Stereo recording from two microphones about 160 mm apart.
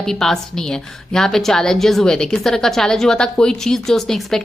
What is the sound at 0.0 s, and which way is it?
A woman's voice, 5° left (ahead or behind).